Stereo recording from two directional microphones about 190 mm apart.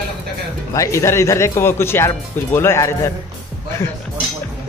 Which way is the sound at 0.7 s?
15° left (ahead or behind).